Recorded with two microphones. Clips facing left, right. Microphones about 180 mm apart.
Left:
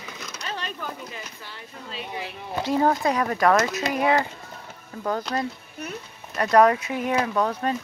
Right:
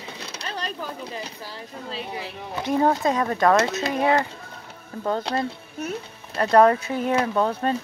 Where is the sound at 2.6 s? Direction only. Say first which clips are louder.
Right 1 dB; 20° right (ahead or behind).